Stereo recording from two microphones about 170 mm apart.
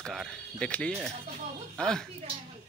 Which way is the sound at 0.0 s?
Centre (ahead or behind).